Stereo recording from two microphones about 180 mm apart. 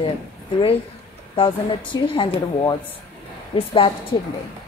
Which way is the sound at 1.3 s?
30° left (ahead or behind).